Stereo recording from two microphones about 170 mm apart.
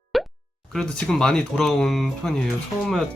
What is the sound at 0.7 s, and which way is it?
Speech, 5° left (ahead or behind).